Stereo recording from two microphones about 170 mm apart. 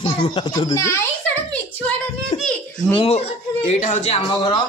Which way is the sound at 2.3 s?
35° left (ahead or behind).